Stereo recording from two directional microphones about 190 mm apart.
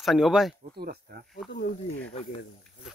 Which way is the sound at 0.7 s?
55° right (ahead or behind).